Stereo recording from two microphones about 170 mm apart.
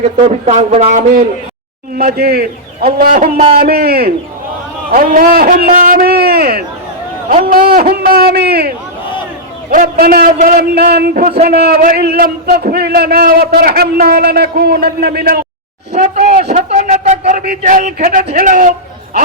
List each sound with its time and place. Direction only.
0.0 s a man's voice: 40° right (ahead or behind)
2.0 s a man's voice: 60° right (ahead or behind)
4.9 s a sound: 55° right (ahead or behind)
7.4 s a man's voice: 60° right (ahead or behind)
9.6 s a man's voice: 55° right (ahead or behind)
15.9 s a man's voice: 40° right (ahead or behind)